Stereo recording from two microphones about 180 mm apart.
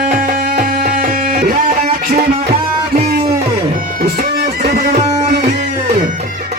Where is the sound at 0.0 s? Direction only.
50° right (ahead or behind).